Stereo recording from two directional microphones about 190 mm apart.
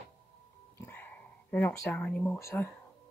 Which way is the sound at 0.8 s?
10° left (ahead or behind).